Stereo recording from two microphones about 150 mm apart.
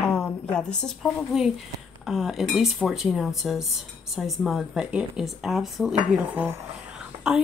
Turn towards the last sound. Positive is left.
turn(degrees=-5)  # may be behind; listen again after turning